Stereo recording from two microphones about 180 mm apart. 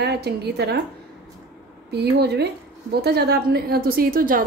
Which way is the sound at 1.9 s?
65° right (ahead or behind).